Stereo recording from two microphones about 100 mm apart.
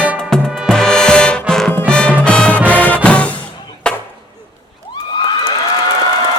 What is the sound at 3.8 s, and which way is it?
Chop, 10° left (ahead or behind).